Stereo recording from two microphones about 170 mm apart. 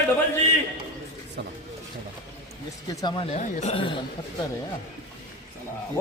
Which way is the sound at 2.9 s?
25° left (ahead or behind).